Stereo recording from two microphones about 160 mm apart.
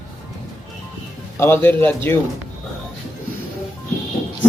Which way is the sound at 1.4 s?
15° left (ahead or behind).